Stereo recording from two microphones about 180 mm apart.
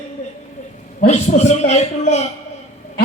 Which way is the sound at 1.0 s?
40° left (ahead or behind).